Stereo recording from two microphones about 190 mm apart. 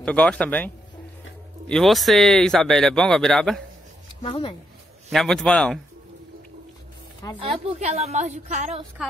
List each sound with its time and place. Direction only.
0.0 s a man's voice: 5° left (ahead or behind)
1.7 s speech: centre (ahead or behind)
4.2 s speech: 25° left (ahead or behind)
5.1 s speech: centre (ahead or behind)
7.3 s a woman's voice: 30° right (ahead or behind)